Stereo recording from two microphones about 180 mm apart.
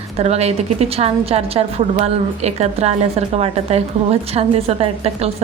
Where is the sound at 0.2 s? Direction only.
35° right (ahead or behind).